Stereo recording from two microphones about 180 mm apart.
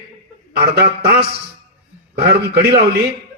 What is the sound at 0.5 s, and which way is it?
A man's voice, 65° right (ahead or behind).